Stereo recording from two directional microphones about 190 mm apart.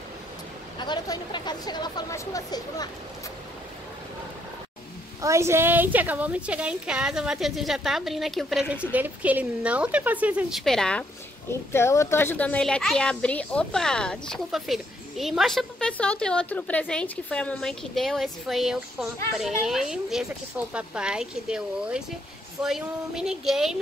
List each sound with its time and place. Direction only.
0.7 s speech: 25° left (ahead or behind)
5.2 s a woman's voice: 15° right (ahead or behind); by 11.1 s 5° left (ahead or behind)
11.7 s speech: 15° left (ahead or behind); by 23.8 s centre (ahead or behind)